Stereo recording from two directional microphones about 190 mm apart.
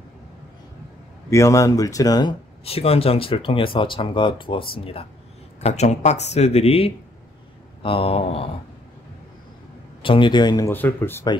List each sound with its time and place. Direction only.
1.3 s speech: 15° left (ahead or behind); by 8.5 s 30° left (ahead or behind)
10.0 s speech: 25° left (ahead or behind)
10.7 s speech: 10° left (ahead or behind)